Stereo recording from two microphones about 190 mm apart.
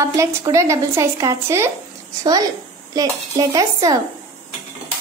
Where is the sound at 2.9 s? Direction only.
20° right (ahead or behind).